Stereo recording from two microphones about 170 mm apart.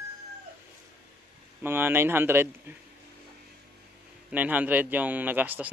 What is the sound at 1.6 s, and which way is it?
Speech, 15° right (ahead or behind).